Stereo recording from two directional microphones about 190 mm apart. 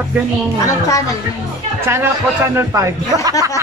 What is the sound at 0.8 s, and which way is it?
Speech, 20° left (ahead or behind).